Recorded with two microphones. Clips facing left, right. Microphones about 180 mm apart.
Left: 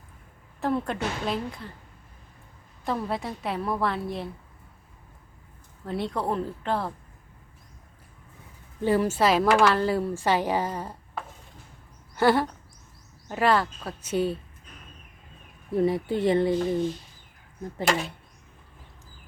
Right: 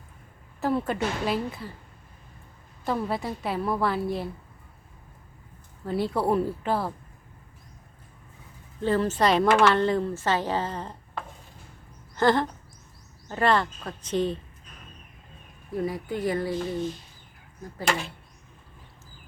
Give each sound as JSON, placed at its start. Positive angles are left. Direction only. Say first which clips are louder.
{"t": 0.6, "sound": "a woman's voice", "louder": "right 1 dB", "side_deg": -5}
{"t": 2.8, "sound": "a woman's voice", "louder": "right 1 dB", "side_deg": 0}
{"t": 5.8, "sound": "a woman's voice", "louder": "right 3 dB", "side_deg": 0}
{"t": 8.8, "sound": "a woman's voice", "louder": "left 1 dB", "side_deg": 10}
{"t": 12.1, "sound": "a sound", "louder": "left 1 dB", "side_deg": 10}
{"t": 13.2, "sound": "a woman's voice", "louder": "even", "side_deg": 5}
{"t": 15.7, "sound": "speech", "louder": "left 5 dB", "side_deg": 25}
{"t": 17.8, "sound": "a woman's voice", "louder": "left 2 dB", "side_deg": 0}